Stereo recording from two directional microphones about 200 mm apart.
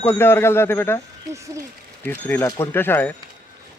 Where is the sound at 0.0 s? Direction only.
10° left (ahead or behind).